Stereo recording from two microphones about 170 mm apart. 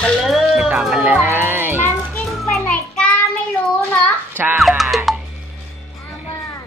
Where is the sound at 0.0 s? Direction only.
Centre (ahead or behind).